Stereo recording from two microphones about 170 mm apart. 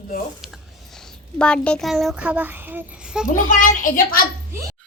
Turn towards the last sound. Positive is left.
turn(degrees=50)  # may be behind; listen again after turning